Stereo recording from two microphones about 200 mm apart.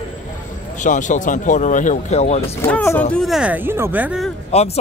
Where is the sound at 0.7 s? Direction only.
40° left (ahead or behind).